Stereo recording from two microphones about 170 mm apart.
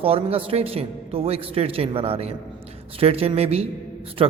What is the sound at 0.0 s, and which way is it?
A man's voice, 35° right (ahead or behind).